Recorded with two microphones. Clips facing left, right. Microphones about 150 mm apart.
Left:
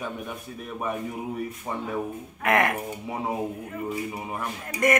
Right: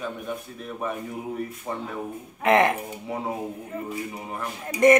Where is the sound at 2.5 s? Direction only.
25° right (ahead or behind).